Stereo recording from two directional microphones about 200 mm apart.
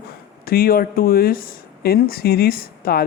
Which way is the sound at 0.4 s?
50° left (ahead or behind).